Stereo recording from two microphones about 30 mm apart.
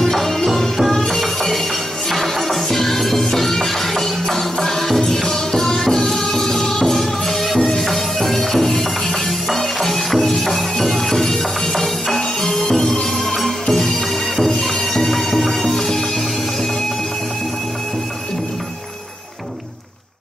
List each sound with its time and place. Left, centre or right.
0.0 s music: centre